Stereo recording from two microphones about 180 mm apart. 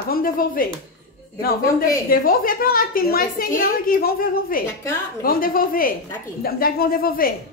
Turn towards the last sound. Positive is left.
turn(degrees=55)  # may be behind; listen again after turning